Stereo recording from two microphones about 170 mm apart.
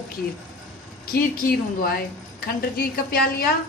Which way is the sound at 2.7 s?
60° left (ahead or behind).